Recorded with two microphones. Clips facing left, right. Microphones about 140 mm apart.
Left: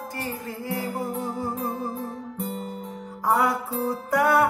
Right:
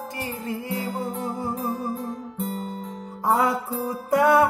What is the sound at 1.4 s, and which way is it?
Music, centre (ahead or behind).